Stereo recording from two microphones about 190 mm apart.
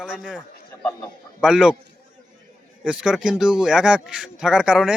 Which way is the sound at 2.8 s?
5° right (ahead or behind).